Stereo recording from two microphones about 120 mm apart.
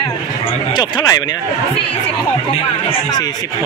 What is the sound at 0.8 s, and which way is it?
Speech, 35° left (ahead or behind).